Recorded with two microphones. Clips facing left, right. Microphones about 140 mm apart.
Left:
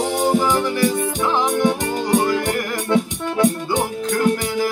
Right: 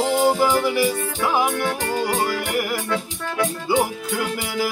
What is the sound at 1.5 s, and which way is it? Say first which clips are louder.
Music: left 4 dB; 15° left (ahead or behind).